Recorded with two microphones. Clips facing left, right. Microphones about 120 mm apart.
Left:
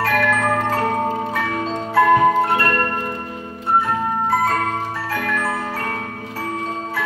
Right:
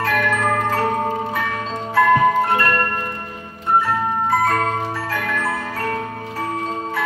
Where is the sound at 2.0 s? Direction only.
20° left (ahead or behind).